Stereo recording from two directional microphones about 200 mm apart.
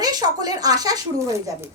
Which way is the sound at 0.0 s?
20° right (ahead or behind).